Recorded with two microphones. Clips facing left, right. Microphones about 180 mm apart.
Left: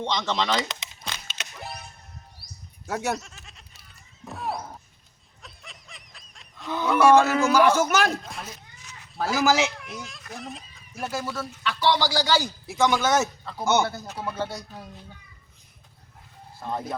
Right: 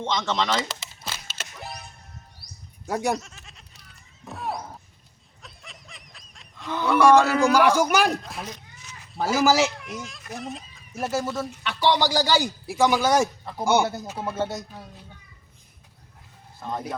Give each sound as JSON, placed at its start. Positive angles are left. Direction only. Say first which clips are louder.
{"t": 0.0, "sound": "music", "louder": "right 1 dB", "side_deg": -5}
{"t": 2.8, "sound": "speech", "louder": "right 3 dB", "side_deg": -10}
{"t": 3.1, "sound": "goat", "louder": "right 2 dB", "side_deg": 0}
{"t": 4.3, "sound": "wild animals", "louder": "even", "side_deg": 0}
{"t": 5.4, "sound": "snicker", "louder": "right 1 dB", "side_deg": 0}
{"t": 6.9, "sound": "speech", "louder": "right 1 dB", "side_deg": 5}
{"t": 7.4, "sound": "speech", "louder": "right 1 dB", "side_deg": -10}
{"t": 8.2, "sound": "speech", "louder": "right 2 dB", "side_deg": 0}
{"t": 11.8, "sound": "speech", "louder": "right 2 dB", "side_deg": -15}
{"t": 16.6, "sound": "speech", "louder": "even", "side_deg": 5}